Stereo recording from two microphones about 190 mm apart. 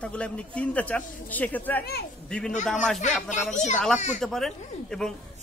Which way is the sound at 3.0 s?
40° left (ahead or behind).